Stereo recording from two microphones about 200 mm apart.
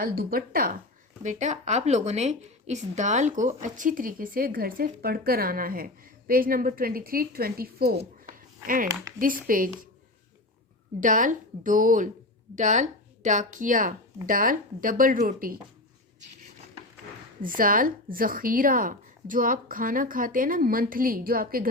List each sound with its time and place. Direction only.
0.0 s a woman's voice: 50° right (ahead or behind)
11.0 s speech: 40° right (ahead or behind)
17.4 s a woman's voice: 45° right (ahead or behind)